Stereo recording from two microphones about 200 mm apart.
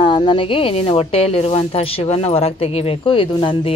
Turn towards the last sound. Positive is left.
turn(degrees=25)  # may be behind; listen again after turning